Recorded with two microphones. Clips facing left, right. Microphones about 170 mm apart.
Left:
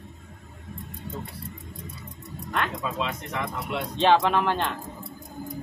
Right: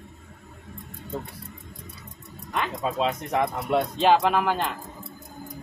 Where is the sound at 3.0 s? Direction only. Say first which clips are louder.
Right 9 dB; 40° right (ahead or behind).